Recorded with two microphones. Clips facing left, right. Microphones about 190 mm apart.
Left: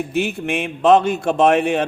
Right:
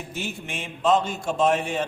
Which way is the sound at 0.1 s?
65° left (ahead or behind).